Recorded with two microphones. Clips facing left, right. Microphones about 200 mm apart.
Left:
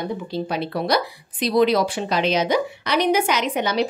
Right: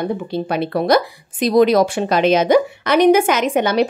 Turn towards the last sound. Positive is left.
turn(degrees=-55)  # may be behind; listen again after turning